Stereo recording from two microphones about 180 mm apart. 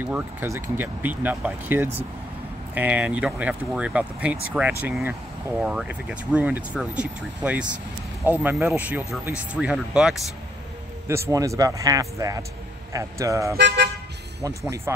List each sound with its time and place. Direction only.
0.0 s speech: 10° right (ahead or behind)
11.2 s speech: 15° right (ahead or behind)
13.6 s speech: 75° right (ahead or behind)
14.9 s speech: 15° right (ahead or behind)